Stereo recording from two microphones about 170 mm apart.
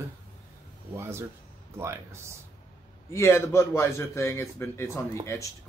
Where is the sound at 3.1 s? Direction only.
15° left (ahead or behind).